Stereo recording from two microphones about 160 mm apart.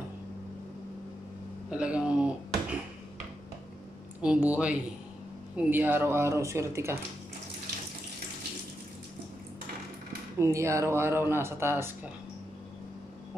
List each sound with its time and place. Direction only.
1.7 s a sound: 5° right (ahead or behind)
4.2 s speech: 10° right (ahead or behind)
10.4 s speech: 20° right (ahead or behind)